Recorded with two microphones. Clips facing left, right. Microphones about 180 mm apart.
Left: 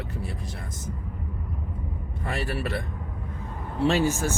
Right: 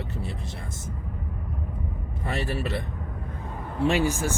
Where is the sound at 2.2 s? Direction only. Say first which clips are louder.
Right 1 dB; 25° right (ahead or behind).